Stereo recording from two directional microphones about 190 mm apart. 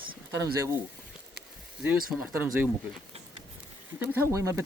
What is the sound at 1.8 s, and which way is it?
Speech, 10° right (ahead or behind).